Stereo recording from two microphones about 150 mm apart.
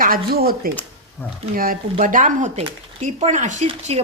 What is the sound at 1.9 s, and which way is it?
Speech, 60° right (ahead or behind).